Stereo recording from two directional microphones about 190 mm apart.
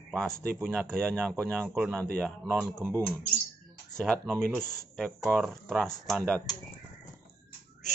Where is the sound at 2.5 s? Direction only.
10° right (ahead or behind).